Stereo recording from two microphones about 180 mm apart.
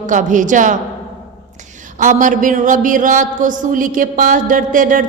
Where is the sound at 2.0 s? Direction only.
45° right (ahead or behind).